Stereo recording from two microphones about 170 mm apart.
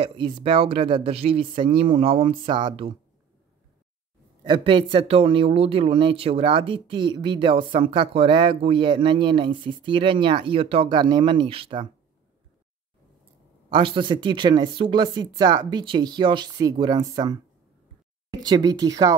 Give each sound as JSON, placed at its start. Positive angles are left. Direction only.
{"t": 0.0, "sound": "speech", "side_deg": -30}
{"t": 4.4, "sound": "speech", "side_deg": -30}
{"t": 13.7, "sound": "speech", "side_deg": -30}
{"t": 18.4, "sound": "speech", "side_deg": -25}